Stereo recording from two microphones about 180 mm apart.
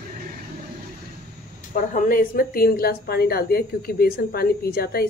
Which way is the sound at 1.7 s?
50° left (ahead or behind).